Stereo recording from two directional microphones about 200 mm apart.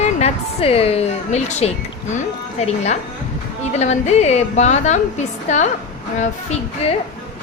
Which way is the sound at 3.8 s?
35° left (ahead or behind).